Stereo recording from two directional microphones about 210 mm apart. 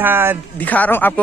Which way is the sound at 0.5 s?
10° left (ahead or behind).